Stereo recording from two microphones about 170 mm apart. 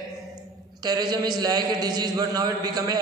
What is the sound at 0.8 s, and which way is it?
A man's voice, 25° right (ahead or behind).